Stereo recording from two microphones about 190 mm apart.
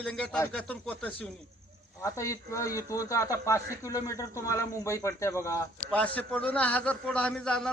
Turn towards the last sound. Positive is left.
turn(degrees=5)  # may be behind; listen again after turning